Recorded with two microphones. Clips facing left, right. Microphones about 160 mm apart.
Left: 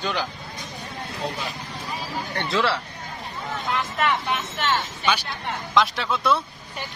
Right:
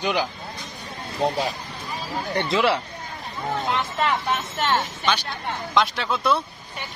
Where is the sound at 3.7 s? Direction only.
30° right (ahead or behind).